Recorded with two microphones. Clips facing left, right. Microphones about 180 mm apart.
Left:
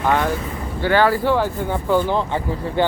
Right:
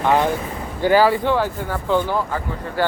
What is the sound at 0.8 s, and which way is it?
Speech, 10° right (ahead or behind).